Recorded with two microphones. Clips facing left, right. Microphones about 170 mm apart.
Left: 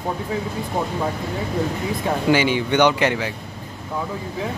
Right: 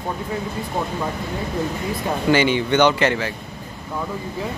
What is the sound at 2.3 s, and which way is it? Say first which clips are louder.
Speech: right 3 dB; 10° left (ahead or behind).